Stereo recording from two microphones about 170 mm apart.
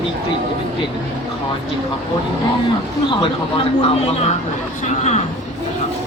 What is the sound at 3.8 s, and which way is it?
Speech, 35° left (ahead or behind).